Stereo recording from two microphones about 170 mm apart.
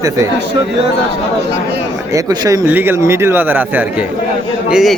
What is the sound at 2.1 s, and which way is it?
A man's voice, 20° right (ahead or behind).